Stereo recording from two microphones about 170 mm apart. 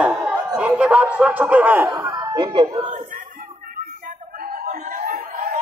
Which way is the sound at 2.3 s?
25° right (ahead or behind).